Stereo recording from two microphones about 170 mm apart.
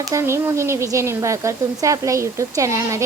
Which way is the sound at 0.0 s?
15° right (ahead or behind).